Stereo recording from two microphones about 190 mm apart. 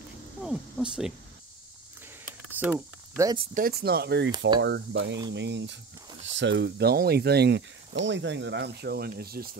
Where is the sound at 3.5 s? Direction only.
50° right (ahead or behind).